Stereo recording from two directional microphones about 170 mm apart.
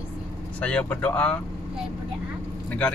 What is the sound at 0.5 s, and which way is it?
Speech, 5° left (ahead or behind).